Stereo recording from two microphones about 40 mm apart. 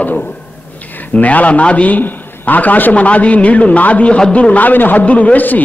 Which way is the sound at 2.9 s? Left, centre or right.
Left.